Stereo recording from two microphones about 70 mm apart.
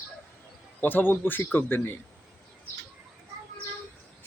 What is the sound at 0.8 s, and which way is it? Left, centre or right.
Speech, left.